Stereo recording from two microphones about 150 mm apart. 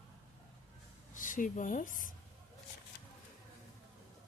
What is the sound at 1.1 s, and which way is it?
Speech, 60° left (ahead or behind).